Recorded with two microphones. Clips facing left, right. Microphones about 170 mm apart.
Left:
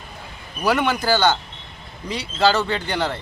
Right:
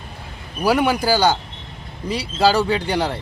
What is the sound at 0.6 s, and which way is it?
Speech, 10° right (ahead or behind).